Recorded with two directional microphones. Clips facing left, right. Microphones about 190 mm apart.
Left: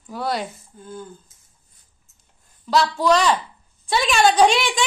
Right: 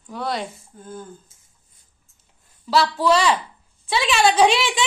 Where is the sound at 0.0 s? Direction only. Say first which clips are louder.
Left 1 dB; 5° left (ahead or behind).